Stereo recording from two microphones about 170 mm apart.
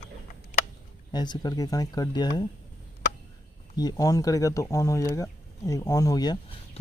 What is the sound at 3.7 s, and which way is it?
Speech, 20° left (ahead or behind).